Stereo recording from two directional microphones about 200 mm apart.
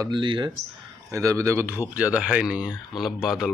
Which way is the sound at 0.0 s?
25° right (ahead or behind).